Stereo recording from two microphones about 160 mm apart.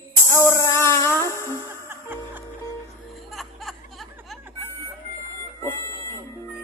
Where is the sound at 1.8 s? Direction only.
10° right (ahead or behind).